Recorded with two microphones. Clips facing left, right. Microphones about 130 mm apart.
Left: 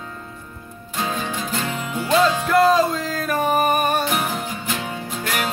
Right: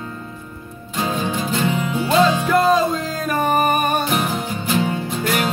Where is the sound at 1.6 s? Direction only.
10° right (ahead or behind).